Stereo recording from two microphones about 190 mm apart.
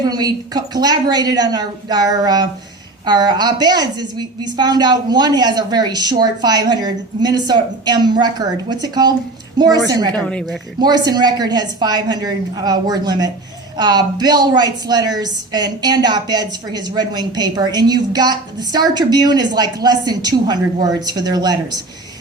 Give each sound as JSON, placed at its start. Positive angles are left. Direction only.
{"t": 0.0, "sound": "a woman's voice", "side_deg": -20}
{"t": 10.2, "sound": "a woman's voice", "side_deg": 5}
{"t": 10.8, "sound": "a woman's voice", "side_deg": -20}